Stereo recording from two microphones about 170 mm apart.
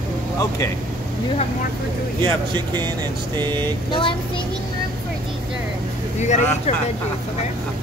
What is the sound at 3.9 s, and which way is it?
Speech, 30° left (ahead or behind).